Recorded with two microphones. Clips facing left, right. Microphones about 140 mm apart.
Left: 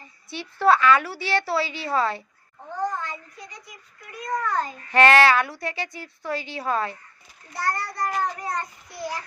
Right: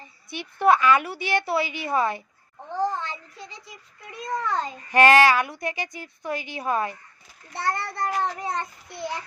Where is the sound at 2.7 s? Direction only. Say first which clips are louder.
Right 2 dB; 25° right (ahead or behind).